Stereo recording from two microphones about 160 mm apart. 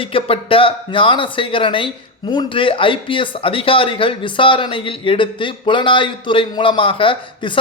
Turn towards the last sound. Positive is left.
turn(degrees=30)  # may be behind; listen again after turning